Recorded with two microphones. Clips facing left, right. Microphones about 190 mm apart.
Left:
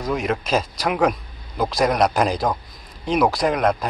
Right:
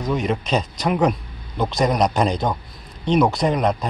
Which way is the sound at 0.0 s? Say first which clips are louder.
Right 1 dB; centre (ahead or behind).